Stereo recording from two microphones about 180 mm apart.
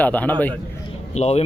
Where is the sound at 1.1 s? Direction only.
35° left (ahead or behind).